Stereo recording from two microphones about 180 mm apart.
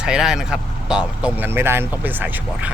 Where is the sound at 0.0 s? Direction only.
5° right (ahead or behind).